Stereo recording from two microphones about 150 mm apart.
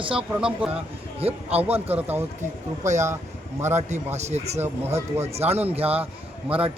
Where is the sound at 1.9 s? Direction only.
10° right (ahead or behind).